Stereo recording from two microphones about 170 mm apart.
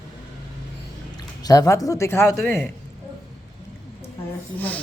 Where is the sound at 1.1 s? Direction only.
20° left (ahead or behind).